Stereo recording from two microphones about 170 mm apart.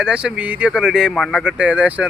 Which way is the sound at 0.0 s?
5° right (ahead or behind).